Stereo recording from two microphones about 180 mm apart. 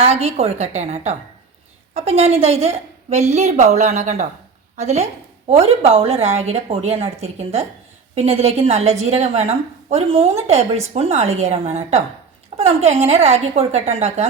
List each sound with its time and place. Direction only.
0.0 s a woman's voice: 35° right (ahead or behind)